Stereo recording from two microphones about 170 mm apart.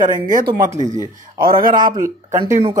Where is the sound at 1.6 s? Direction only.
55° right (ahead or behind).